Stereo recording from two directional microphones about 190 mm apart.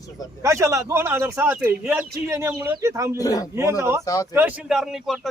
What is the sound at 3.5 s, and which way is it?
A man's voice, 15° right (ahead or behind).